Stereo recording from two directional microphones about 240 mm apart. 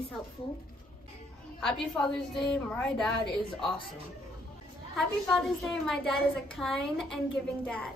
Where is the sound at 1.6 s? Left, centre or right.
Centre.